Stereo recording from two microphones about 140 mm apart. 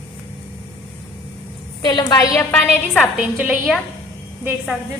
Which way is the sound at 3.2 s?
5° right (ahead or behind).